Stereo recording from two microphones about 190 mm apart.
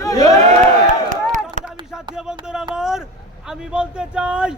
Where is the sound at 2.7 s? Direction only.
5° right (ahead or behind).